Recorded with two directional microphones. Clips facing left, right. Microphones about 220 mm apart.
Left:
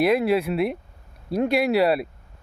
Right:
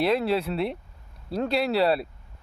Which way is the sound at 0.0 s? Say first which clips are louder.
Left 4 dB; 10° left (ahead or behind).